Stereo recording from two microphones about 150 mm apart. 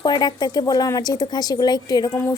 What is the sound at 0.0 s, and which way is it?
A woman's voice, 30° left (ahead or behind).